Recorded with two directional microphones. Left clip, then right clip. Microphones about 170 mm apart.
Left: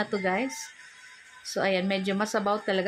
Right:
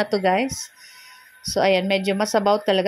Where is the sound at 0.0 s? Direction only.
30° right (ahead or behind).